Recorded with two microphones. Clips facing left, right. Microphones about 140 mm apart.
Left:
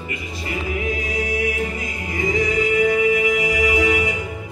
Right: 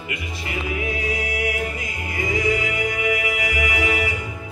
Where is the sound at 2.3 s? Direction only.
30° left (ahead or behind).